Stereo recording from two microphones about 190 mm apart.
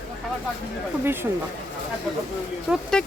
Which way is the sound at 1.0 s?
10° right (ahead or behind).